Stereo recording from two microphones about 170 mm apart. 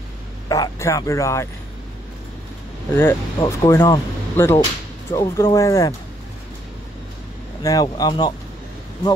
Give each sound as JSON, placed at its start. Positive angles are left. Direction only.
{"t": 0.5, "sound": "speech", "side_deg": 20}
{"t": 3.0, "sound": "speech", "side_deg": 15}
{"t": 7.6, "sound": "speech", "side_deg": 20}